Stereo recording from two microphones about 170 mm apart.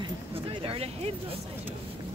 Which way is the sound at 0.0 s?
30° right (ahead or behind).